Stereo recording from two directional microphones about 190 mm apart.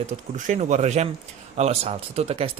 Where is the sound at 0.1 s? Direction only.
40° right (ahead or behind).